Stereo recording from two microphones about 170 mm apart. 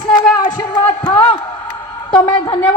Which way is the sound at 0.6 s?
25° left (ahead or behind).